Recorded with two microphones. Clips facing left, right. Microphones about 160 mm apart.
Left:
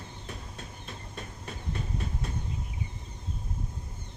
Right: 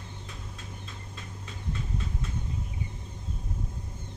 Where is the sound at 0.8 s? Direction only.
55° left (ahead or behind).